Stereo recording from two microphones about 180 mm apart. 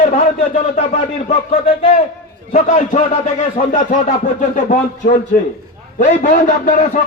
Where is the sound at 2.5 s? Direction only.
40° left (ahead or behind).